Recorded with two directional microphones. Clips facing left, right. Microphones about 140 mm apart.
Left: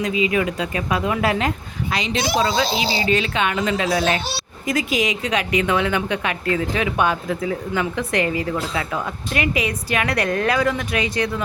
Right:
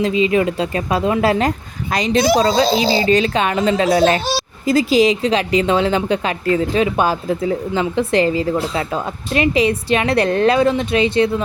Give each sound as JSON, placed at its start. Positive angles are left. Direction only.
{"t": 0.2, "sound": "a woman's voice", "side_deg": -30}